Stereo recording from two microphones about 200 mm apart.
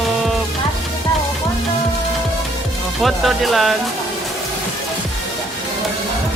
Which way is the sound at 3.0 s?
Centre (ahead or behind).